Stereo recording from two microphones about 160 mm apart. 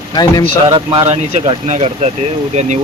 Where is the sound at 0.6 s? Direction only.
35° right (ahead or behind).